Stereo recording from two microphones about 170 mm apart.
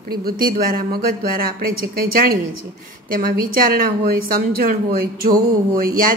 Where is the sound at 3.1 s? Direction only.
60° right (ahead or behind).